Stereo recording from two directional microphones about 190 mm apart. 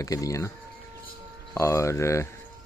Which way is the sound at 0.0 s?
20° left (ahead or behind).